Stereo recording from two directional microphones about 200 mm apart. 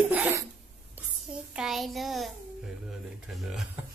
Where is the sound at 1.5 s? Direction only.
Centre (ahead or behind).